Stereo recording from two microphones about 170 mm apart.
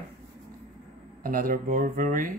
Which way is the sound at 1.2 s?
55° right (ahead or behind).